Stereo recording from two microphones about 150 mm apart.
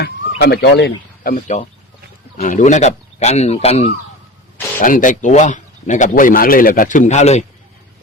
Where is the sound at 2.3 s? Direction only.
55° left (ahead or behind).